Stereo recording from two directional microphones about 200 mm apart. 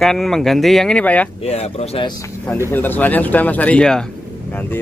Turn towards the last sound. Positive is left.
turn(degrees=5)  # may be behind; listen again after turning